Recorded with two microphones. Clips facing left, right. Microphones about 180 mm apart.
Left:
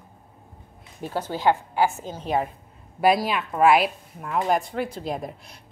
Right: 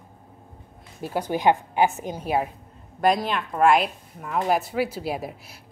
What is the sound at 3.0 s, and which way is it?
A woman's voice, 5° left (ahead or behind).